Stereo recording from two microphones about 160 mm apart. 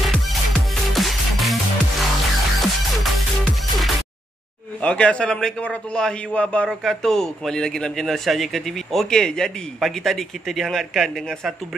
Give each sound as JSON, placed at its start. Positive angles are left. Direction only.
{"t": 0.0, "sound": "music", "side_deg": 0}
{"t": 4.8, "sound": "a man's voice", "side_deg": 5}